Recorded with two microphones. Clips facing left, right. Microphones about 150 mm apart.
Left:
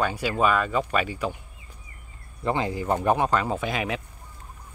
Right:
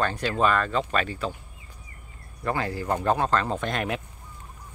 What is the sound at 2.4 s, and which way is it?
Speech, 20° left (ahead or behind).